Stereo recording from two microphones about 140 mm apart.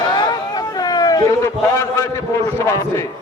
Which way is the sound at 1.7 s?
20° left (ahead or behind).